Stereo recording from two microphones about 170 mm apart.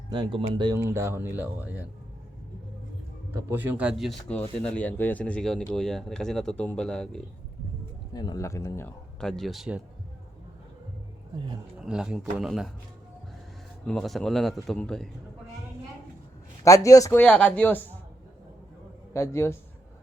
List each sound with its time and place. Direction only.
0.1 s speech: 30° right (ahead or behind)
0.8 s speech: 15° right (ahead or behind)
3.3 s speech: 10° right (ahead or behind); by 7.2 s 5° left (ahead or behind)
8.1 s speech: 25° left (ahead or behind)
9.2 s speech: centre (ahead or behind)
11.8 s speech: 5° right (ahead or behind)
13.8 s speech: centre (ahead or behind)
16.6 s speech: 20° left (ahead or behind)
19.1 s speech: 15° left (ahead or behind)